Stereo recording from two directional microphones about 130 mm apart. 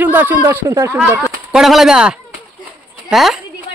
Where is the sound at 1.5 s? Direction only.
Centre (ahead or behind).